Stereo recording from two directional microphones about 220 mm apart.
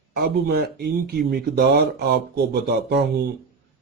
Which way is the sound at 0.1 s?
45° right (ahead or behind).